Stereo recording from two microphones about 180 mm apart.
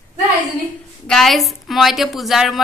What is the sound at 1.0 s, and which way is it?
A woman's voice, centre (ahead or behind).